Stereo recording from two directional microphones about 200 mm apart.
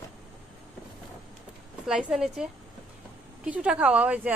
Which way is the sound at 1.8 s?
5° right (ahead or behind).